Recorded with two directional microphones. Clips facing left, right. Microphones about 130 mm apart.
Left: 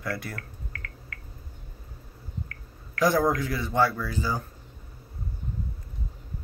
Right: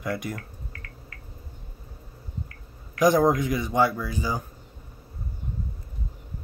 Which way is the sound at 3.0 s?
15° right (ahead or behind).